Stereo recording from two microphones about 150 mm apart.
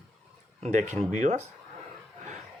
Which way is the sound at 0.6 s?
55° right (ahead or behind).